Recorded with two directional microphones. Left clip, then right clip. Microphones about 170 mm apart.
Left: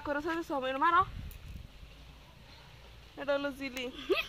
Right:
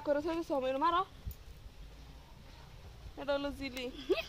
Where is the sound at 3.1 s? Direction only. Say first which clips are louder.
Left 3 dB; 30° left (ahead or behind).